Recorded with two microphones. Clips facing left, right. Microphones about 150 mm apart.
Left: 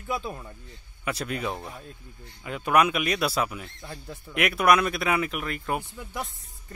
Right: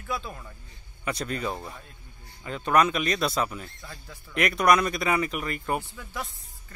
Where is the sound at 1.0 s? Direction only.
5° left (ahead or behind).